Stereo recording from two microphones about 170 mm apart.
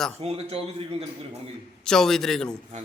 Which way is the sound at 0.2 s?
35° right (ahead or behind).